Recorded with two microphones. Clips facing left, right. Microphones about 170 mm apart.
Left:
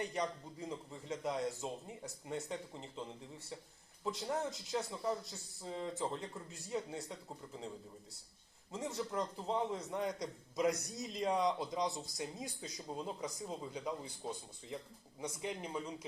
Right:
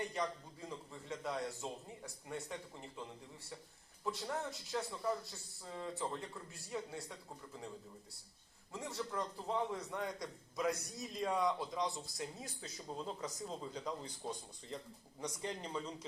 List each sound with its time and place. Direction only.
0.0 s a man's voice: 20° left (ahead or behind)
4.0 s a man's voice: 20° left (ahead or behind)
8.7 s a man's voice: 20° left (ahead or behind)